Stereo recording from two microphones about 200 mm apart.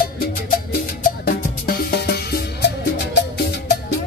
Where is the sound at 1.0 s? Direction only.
50° left (ahead or behind).